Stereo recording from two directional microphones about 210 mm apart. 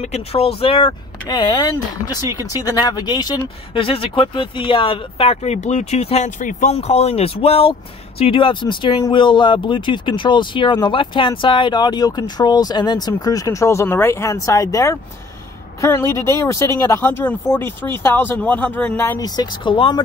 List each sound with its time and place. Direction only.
0.0 s speech: 30° left (ahead or behind)